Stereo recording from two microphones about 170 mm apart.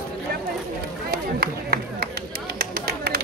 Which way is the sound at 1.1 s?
65° right (ahead or behind).